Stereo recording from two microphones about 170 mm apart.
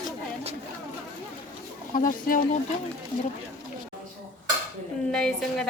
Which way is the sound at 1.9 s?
55° left (ahead or behind).